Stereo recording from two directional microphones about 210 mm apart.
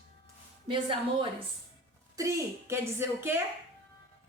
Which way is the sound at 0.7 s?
25° right (ahead or behind).